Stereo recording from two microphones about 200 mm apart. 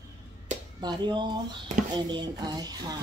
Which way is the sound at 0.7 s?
20° right (ahead or behind).